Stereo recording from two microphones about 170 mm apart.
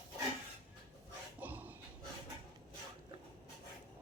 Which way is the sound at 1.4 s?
10° right (ahead or behind).